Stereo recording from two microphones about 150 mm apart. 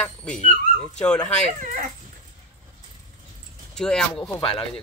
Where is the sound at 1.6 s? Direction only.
60° right (ahead or behind).